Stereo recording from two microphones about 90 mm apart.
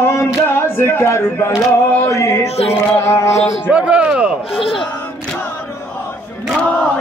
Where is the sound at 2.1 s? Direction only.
30° left (ahead or behind).